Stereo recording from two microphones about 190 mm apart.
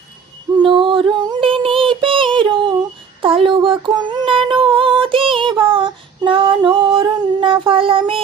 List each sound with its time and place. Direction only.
0.6 s music: 25° right (ahead or behind)
3.2 s female singing: 25° right (ahead or behind)